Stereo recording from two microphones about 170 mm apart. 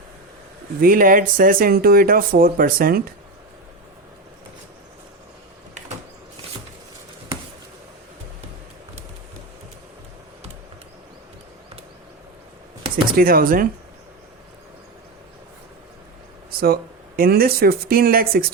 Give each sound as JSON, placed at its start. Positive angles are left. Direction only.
{"t": 0.8, "sound": "speech", "side_deg": -55}
{"t": 13.1, "sound": "speech", "side_deg": -60}
{"t": 16.6, "sound": "speech", "side_deg": -60}